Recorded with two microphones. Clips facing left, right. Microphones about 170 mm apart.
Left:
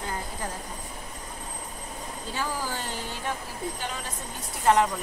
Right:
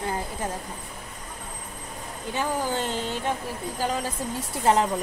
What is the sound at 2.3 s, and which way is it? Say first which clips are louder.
Speech: right 6 dB; 20° right (ahead or behind).